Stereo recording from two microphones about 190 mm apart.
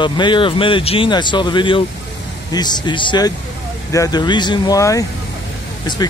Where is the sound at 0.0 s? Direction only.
25° left (ahead or behind).